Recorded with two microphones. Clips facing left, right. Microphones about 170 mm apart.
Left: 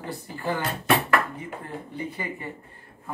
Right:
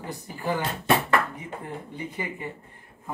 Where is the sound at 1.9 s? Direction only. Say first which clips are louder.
Left 3 dB; 20° right (ahead or behind).